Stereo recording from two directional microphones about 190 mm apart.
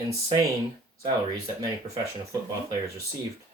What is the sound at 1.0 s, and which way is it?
Speech, 20° right (ahead or behind).